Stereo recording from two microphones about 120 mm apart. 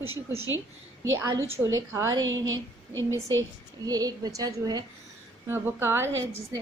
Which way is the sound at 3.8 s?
30° right (ahead or behind).